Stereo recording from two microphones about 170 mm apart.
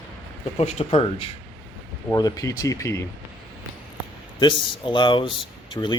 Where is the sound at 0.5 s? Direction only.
40° left (ahead or behind).